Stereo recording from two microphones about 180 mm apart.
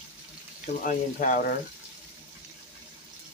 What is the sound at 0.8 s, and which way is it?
Speech, 50° left (ahead or behind).